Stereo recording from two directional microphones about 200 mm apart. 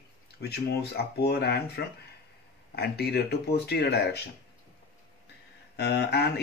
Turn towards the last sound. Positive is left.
turn(degrees=55)  # may be behind; listen again after turning